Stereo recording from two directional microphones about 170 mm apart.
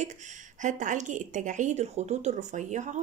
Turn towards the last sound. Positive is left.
turn(degrees=-45)  # may be behind; listen again after turning